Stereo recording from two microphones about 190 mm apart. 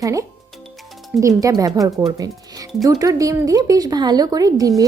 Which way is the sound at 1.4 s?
20° right (ahead or behind).